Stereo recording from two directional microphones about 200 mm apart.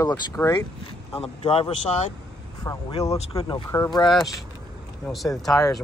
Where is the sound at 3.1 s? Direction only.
30° left (ahead or behind).